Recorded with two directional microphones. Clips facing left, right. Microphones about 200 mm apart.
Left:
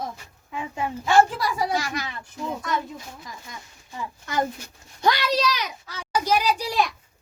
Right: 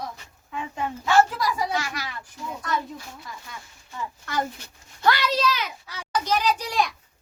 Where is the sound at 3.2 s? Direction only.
15° left (ahead or behind).